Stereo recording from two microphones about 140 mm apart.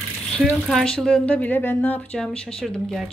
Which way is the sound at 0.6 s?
5° left (ahead or behind).